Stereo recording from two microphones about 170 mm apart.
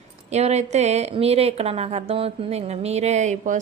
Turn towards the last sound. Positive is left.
turn(degrees=-45)  # may be behind; listen again after turning